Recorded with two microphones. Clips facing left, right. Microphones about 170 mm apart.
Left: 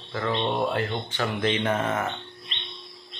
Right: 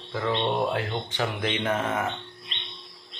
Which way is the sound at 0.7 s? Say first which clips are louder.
Left 1 dB; 10° right (ahead or behind).